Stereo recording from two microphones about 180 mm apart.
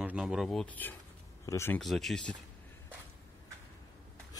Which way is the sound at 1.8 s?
Centre (ahead or behind).